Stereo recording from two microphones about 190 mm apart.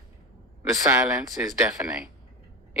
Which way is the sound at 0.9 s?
15° right (ahead or behind).